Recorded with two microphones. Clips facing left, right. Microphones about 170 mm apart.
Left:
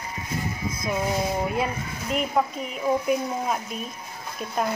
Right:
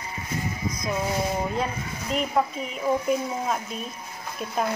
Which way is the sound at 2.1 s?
5° left (ahead or behind).